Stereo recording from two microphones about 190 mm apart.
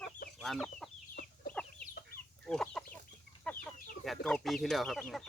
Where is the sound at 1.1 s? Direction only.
50° left (ahead or behind).